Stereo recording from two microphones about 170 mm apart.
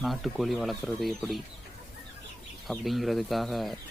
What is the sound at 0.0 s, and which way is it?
Speech, centre (ahead or behind).